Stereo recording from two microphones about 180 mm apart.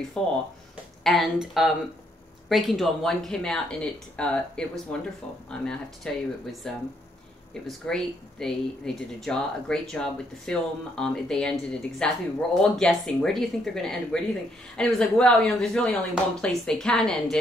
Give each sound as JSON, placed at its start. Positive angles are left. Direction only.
{"t": 0.2, "sound": "speech", "side_deg": 5}